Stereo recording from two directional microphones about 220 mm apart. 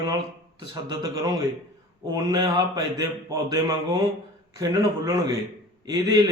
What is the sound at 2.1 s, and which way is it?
Speech, 15° right (ahead or behind).